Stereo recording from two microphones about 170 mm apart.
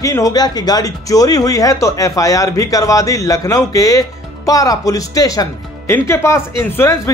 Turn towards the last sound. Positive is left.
turn(degrees=15)  # may be behind; listen again after turning